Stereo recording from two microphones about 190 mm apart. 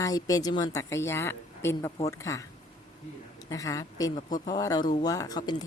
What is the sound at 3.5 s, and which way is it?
A woman's voice, 20° left (ahead or behind).